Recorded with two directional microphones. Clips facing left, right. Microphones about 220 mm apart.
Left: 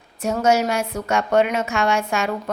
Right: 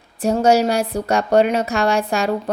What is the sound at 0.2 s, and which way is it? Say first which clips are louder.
A woman's voice: right 4 dB; 35° right (ahead or behind).